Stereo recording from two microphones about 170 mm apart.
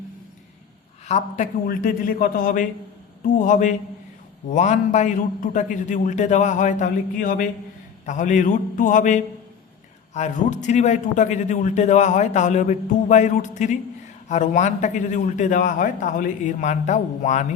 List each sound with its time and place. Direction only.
1.0 s a woman's voice: 40° left (ahead or behind)
1.6 s a man's voice: 60° left (ahead or behind)